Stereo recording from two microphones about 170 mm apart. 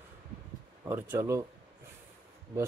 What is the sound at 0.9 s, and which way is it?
Speech, 15° right (ahead or behind).